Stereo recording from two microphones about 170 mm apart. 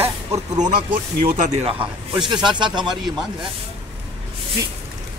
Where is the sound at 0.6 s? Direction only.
50° right (ahead or behind).